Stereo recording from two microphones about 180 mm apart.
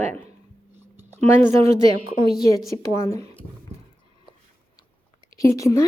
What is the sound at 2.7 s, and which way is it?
Speech, 15° left (ahead or behind).